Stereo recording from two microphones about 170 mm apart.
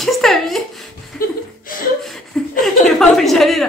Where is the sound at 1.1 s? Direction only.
55° left (ahead or behind).